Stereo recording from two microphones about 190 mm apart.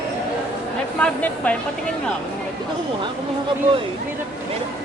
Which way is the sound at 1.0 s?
5° left (ahead or behind).